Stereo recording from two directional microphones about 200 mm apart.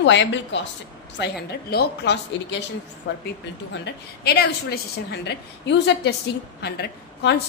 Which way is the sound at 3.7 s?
60° left (ahead or behind).